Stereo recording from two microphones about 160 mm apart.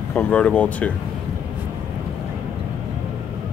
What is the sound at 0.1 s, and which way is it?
Speech, 10° left (ahead or behind).